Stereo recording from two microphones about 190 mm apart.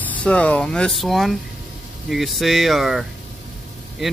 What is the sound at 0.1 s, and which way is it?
Speech, 5° left (ahead or behind).